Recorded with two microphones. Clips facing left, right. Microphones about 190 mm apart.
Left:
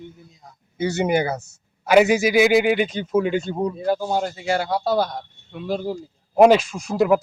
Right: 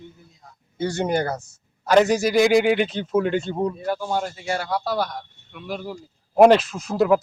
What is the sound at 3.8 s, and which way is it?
A man's voice, 25° left (ahead or behind).